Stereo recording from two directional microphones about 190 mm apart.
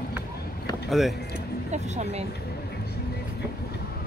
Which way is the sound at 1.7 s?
35° right (ahead or behind).